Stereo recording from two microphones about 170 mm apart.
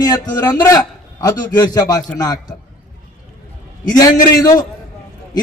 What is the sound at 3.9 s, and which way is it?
Speech, 20° left (ahead or behind).